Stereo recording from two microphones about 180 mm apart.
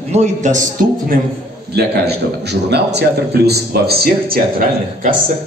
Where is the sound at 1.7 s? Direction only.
65° right (ahead or behind).